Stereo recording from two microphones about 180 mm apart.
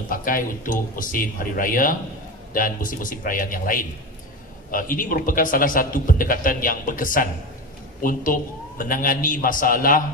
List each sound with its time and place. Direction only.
0.1 s a man's voice: 50° left (ahead or behind)